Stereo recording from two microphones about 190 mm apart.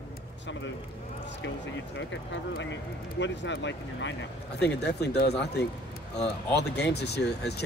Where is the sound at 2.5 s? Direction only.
70° left (ahead or behind).